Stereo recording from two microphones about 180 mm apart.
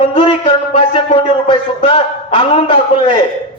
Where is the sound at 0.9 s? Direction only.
30° left (ahead or behind).